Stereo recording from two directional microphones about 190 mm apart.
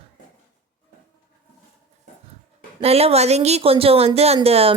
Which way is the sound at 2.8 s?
30° right (ahead or behind).